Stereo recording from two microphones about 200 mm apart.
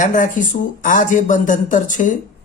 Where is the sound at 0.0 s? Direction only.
40° left (ahead or behind).